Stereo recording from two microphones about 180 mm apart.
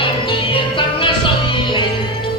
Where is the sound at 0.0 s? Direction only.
25° left (ahead or behind).